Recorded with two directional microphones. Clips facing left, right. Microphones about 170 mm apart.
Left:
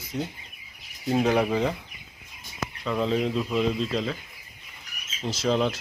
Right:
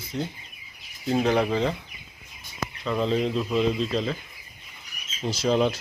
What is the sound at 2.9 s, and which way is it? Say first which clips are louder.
Speech: right 1 dB; 5° left (ahead or behind).